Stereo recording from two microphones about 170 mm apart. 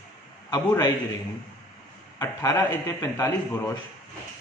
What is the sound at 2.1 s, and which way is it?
Speech, 20° left (ahead or behind).